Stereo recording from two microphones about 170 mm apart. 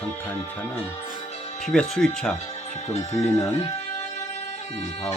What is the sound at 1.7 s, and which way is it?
Speech, 5° left (ahead or behind).